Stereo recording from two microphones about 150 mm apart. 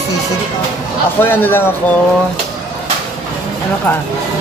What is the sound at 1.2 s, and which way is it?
Speech, 15° left (ahead or behind).